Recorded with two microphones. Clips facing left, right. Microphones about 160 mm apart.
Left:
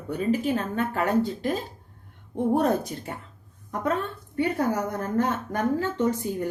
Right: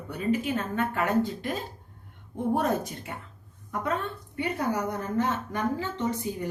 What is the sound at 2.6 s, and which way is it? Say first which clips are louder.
Speech: left 4 dB; 40° left (ahead or behind).